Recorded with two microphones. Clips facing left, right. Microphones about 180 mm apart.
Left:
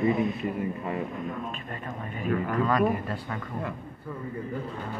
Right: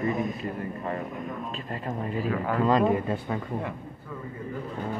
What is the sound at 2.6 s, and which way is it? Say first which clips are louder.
Speech: right 5 dB; 25° right (ahead or behind).